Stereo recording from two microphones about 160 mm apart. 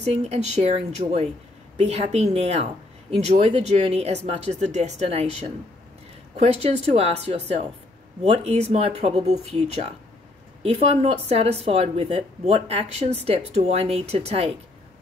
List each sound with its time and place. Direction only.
0.0 s a woman's voice: 40° right (ahead or behind)